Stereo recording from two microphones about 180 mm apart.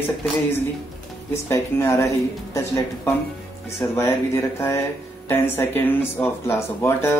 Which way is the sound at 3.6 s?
15° left (ahead or behind).